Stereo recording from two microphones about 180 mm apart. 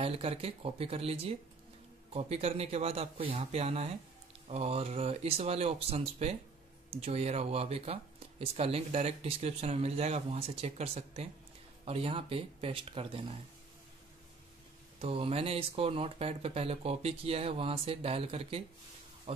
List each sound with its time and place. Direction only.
0.0 s speech: 30° right (ahead or behind)
15.0 s speech: 30° right (ahead or behind)
19.3 s music: 35° right (ahead or behind)